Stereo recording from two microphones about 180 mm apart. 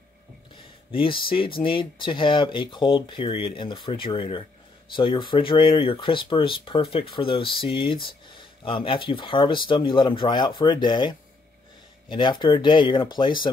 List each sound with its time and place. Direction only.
0.9 s speech: 30° left (ahead or behind)